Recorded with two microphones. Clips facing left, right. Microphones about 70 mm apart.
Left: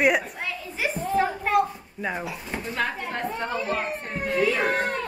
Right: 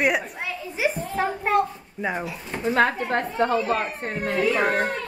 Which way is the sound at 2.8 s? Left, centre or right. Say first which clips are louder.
Right 7 dB; right.